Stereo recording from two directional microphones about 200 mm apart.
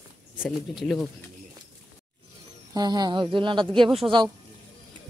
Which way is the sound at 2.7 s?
20° right (ahead or behind).